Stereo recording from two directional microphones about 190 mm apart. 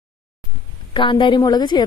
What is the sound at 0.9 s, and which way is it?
Speech, 25° left (ahead or behind).